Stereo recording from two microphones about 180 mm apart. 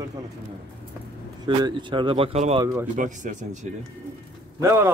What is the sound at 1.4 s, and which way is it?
Speech, 25° right (ahead or behind).